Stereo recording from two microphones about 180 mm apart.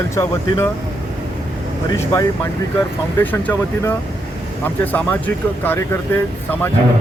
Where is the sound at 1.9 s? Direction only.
15° left (ahead or behind).